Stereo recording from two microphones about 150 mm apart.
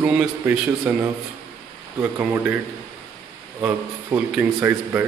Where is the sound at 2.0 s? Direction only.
15° right (ahead or behind).